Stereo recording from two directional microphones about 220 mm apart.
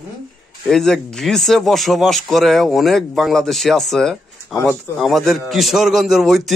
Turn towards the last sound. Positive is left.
turn(degrees=0)  # may be behind; listen again after turning